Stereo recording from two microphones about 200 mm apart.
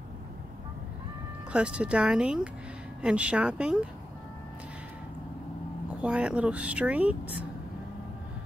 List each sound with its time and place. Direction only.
1.5 s speech: 5° right (ahead or behind)
5.9 s speech: 5° right (ahead or behind)